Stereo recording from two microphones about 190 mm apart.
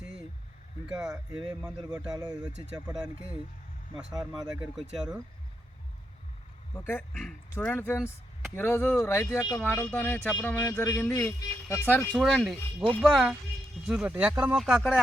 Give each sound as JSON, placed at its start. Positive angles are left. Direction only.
{"t": 0.9, "sound": "speech", "side_deg": -5}
{"t": 3.9, "sound": "speech", "side_deg": -20}
{"t": 4.6, "sound": "speech", "side_deg": -5}
{"t": 6.7, "sound": "speech", "side_deg": 10}
{"t": 7.1, "sound": "speech", "side_deg": 0}